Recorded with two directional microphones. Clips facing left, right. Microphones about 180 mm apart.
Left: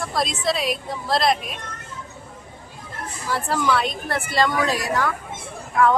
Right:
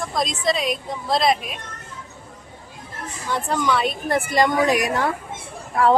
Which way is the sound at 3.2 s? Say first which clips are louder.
Even; 5° left (ahead or behind).